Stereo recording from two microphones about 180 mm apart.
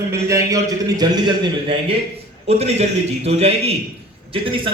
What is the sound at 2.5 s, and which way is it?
A man's voice, 35° right (ahead or behind).